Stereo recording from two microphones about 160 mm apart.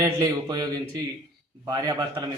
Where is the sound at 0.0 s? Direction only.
25° right (ahead or behind).